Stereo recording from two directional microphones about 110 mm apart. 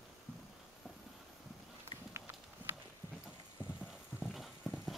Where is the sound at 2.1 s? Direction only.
25° right (ahead or behind).